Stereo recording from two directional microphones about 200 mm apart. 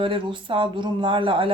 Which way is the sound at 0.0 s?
25° right (ahead or behind).